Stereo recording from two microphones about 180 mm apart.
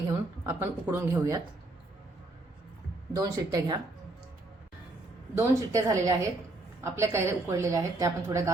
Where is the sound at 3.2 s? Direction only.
20° right (ahead or behind).